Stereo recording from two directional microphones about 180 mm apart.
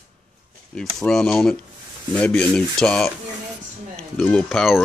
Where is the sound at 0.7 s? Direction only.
5° left (ahead or behind).